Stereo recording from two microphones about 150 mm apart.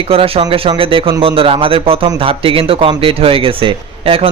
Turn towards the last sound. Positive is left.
turn(degrees=-40)  # may be behind; listen again after turning